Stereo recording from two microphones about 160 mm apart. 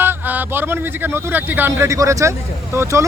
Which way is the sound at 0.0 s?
10° right (ahead or behind).